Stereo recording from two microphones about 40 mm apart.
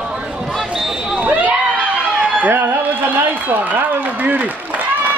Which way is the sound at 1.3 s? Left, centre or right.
Right.